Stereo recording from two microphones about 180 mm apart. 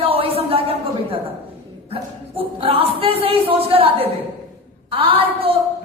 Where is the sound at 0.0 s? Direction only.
30° right (ahead or behind).